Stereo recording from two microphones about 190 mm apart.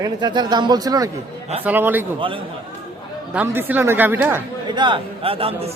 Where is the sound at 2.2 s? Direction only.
25° right (ahead or behind).